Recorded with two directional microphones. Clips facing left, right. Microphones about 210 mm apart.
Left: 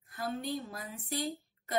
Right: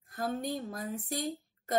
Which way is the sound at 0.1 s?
45° right (ahead or behind).